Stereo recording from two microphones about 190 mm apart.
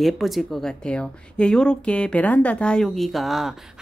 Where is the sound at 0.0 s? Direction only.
Centre (ahead or behind).